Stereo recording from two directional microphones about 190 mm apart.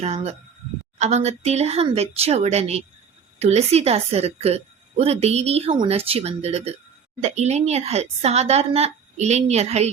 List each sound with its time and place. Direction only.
0.0 s a woman's voice: 35° right (ahead or behind)